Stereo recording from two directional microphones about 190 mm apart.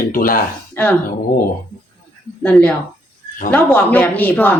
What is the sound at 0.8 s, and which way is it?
Speech, 10° left (ahead or behind).